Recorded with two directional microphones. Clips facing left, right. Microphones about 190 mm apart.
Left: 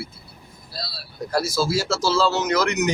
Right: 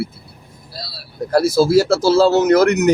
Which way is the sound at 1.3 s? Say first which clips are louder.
Right 10 dB; 55° right (ahead or behind).